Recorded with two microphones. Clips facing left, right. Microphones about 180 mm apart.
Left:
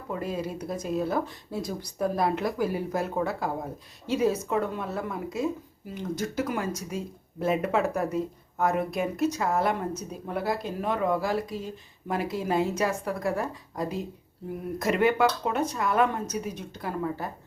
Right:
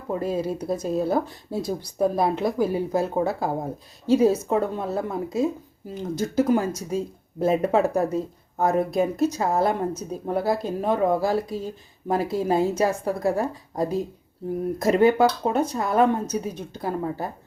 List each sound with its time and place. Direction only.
0.1 s speech: 30° right (ahead or behind)